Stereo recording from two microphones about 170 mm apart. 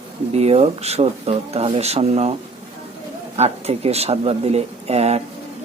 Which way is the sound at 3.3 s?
40° right (ahead or behind).